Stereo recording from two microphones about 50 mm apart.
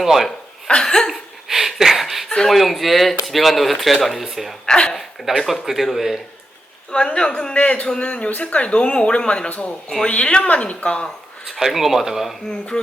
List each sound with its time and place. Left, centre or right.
0.0 s speech: centre
0.3 s chuckle: centre
1.1 s a sound: centre
2.5 s speech: centre
4.6 s speech: centre
5.6 s speech: centre
6.9 s speech: centre
11.4 s speech: centre
12.5 s speech: centre